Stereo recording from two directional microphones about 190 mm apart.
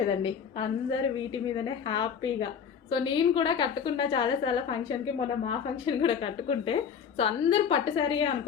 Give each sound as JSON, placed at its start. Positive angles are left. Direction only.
{"t": 0.2, "sound": "a woman's voice", "side_deg": 30}